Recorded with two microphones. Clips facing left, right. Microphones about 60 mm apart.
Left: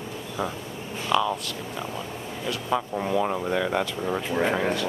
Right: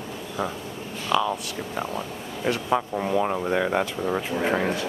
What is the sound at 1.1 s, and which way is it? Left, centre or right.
Speech, centre.